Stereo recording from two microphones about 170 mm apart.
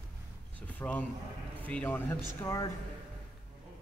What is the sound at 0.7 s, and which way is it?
A man's voice, 10° left (ahead or behind).